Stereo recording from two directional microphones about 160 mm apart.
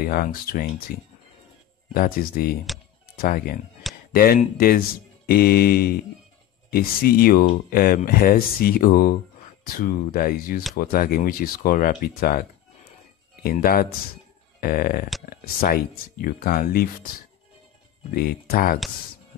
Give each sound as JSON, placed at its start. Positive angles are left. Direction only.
{"t": 0.0, "sound": "speech", "side_deg": 65}
{"t": 2.0, "sound": "speech", "side_deg": 65}
{"t": 18.1, "sound": "speech", "side_deg": 70}